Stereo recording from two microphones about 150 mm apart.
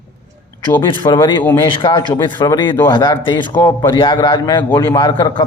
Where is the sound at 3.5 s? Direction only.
20° left (ahead or behind).